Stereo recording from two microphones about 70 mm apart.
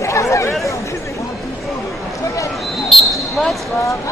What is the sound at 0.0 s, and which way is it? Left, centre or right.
Chatter, left.